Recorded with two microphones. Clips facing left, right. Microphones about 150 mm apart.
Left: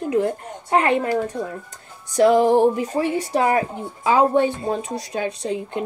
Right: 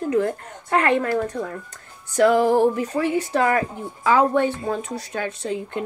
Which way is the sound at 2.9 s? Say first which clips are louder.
Even; 30° left (ahead or behind).